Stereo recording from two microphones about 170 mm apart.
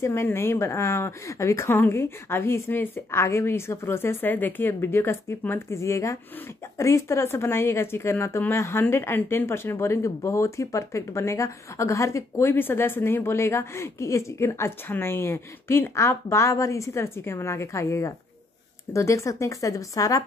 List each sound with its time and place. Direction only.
0.0 s speech: 15° left (ahead or behind)